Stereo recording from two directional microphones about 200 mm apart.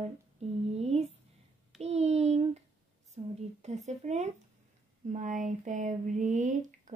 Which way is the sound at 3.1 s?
35° right (ahead or behind).